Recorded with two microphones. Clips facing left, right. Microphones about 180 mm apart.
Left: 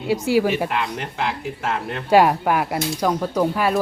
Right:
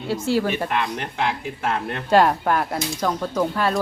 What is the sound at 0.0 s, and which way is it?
Speech, 15° left (ahead or behind).